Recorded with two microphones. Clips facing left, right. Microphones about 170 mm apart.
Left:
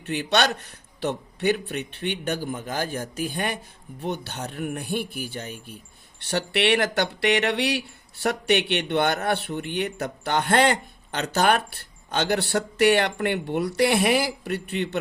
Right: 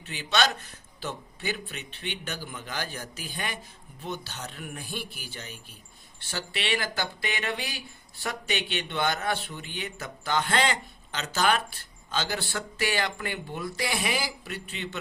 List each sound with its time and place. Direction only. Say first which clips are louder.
0.0 s speech: left 4 dB; 60° left (ahead or behind)
6.3 s speech: left 9 dB; 65° left (ahead or behind)